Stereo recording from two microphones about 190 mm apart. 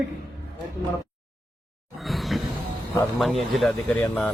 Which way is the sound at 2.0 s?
Centre (ahead or behind).